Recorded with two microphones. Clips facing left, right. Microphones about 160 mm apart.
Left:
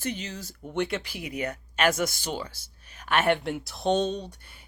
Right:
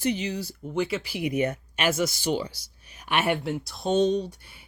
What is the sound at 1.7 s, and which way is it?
Speech, 5° right (ahead or behind).